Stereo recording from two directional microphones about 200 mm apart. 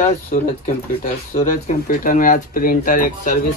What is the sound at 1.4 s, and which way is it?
Speech, 40° left (ahead or behind).